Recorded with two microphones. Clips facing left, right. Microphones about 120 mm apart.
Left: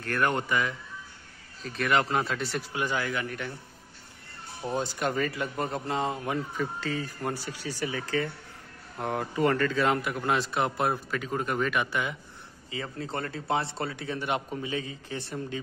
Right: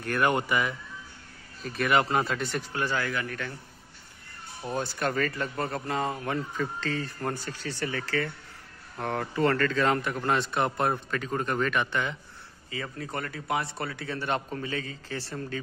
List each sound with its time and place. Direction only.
0.0 s speech: 10° right (ahead or behind)
2.7 s a man's voice: 15° left (ahead or behind)
4.6 s a man's voice: 15° left (ahead or behind)
12.7 s speech: 25° left (ahead or behind)